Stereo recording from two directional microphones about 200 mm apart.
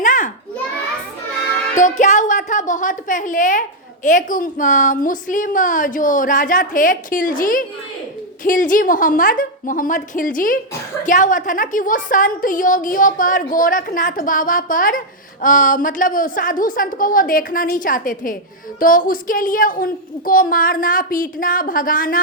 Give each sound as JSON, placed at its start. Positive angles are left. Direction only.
{"t": 0.0, "sound": "children playing", "side_deg": 40}
{"t": 1.7, "sound": "a woman's voice", "side_deg": 35}